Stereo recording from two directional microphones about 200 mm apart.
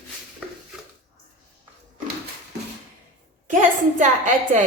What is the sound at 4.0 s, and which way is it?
Speech, 40° right (ahead or behind).